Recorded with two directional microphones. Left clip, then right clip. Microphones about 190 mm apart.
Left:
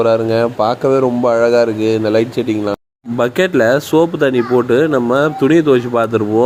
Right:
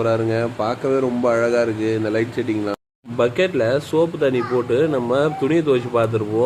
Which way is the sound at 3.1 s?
35° left (ahead or behind).